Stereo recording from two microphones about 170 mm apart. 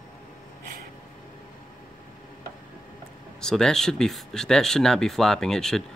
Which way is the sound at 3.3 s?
5° left (ahead or behind).